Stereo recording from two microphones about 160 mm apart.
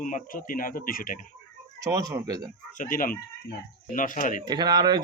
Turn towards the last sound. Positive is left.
turn(degrees=-25)  # may be behind; listen again after turning